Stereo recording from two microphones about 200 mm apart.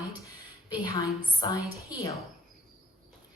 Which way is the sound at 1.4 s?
20° left (ahead or behind).